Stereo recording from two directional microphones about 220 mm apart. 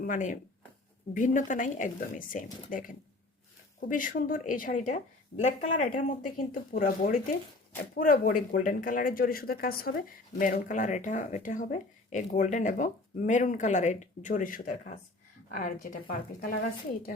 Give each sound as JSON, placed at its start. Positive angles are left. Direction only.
{"t": 0.0, "sound": "speech", "side_deg": 35}